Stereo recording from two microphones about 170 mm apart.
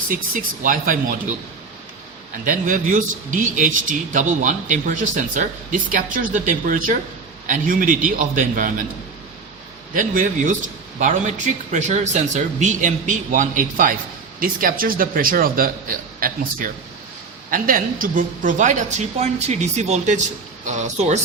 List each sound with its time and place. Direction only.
0.3 s a man's voice: 50° right (ahead or behind)
2.4 s a man's voice: 50° right (ahead or behind)
9.9 s a man's voice: 50° right (ahead or behind)
11.7 s a man's voice: 45° right (ahead or behind)